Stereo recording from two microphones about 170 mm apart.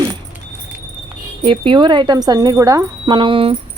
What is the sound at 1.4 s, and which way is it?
Speech, 30° right (ahead or behind).